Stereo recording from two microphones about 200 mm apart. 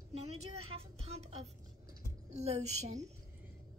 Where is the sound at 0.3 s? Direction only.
30° right (ahead or behind).